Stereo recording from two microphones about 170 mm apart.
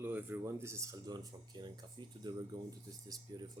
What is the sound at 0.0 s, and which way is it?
Speech, 10° right (ahead or behind).